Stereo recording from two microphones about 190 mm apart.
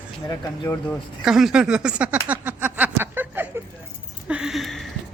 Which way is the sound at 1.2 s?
5° right (ahead or behind).